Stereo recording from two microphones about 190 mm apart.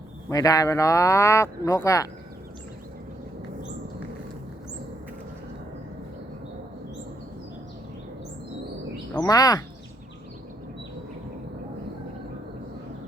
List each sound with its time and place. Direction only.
0.3 s speech: 20° left (ahead or behind)
9.1 s speech: 20° left (ahead or behind)